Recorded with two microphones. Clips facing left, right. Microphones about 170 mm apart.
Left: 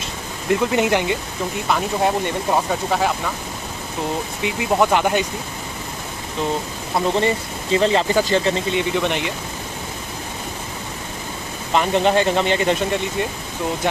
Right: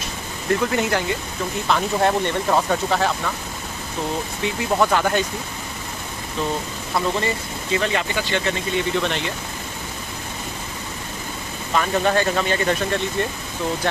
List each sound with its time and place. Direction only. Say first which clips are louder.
0.5 s speech: left 3 dB; 15° left (ahead or behind)
4.4 s speech: left 2 dB; 15° left (ahead or behind)
7.0 s speech: left 4 dB; 25° left (ahead or behind)
8.7 s speech: left 2 dB; 15° left (ahead or behind)
11.7 s speech: left 3 dB; 20° left (ahead or behind)